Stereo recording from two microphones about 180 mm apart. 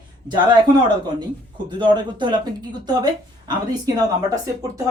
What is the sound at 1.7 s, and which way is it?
Speech, 25° right (ahead or behind).